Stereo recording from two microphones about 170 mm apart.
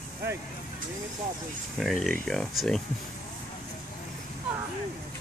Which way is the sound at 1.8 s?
Centre (ahead or behind).